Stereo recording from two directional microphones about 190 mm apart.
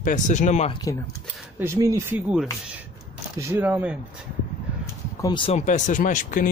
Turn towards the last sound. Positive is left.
turn(degrees=45)  # may be behind; listen again after turning